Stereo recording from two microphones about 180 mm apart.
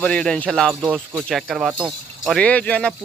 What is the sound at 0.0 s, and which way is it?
Speech, 5° left (ahead or behind).